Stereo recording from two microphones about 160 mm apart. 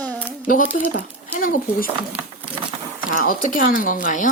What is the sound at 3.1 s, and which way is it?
Speech, 60° left (ahead or behind).